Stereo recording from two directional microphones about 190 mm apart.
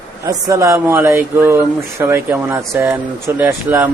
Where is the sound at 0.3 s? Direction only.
20° right (ahead or behind).